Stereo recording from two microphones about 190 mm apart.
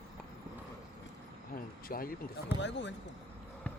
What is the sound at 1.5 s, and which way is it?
Speech, 50° left (ahead or behind).